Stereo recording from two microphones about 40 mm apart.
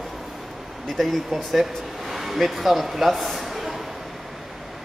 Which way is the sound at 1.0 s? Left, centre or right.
Centre.